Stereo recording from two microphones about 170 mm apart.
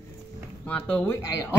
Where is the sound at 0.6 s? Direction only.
10° left (ahead or behind).